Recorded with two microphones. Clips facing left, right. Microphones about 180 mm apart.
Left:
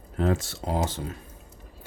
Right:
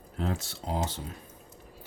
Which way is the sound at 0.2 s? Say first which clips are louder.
Left 7 dB; 65° left (ahead or behind).